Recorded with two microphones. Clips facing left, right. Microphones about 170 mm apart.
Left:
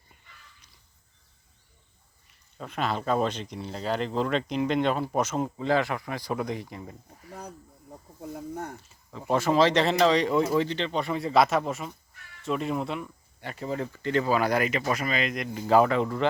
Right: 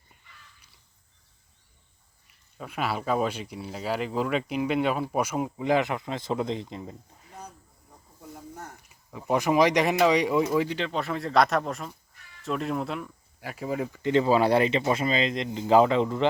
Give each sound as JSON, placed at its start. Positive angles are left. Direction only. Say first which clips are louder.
{"t": 2.6, "sound": "speech", "louder": "left 1 dB", "side_deg": -10}
{"t": 7.3, "sound": "snake", "louder": "left 3 dB", "side_deg": 60}
{"t": 8.8, "sound": "a sound", "louder": "even", "side_deg": -15}
{"t": 9.3, "sound": "speech", "louder": "even", "side_deg": -15}